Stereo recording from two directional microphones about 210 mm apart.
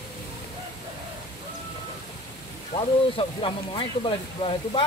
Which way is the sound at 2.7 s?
25° left (ahead or behind).